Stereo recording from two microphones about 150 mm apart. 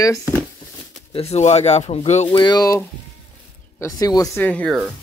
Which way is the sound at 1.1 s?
45° left (ahead or behind).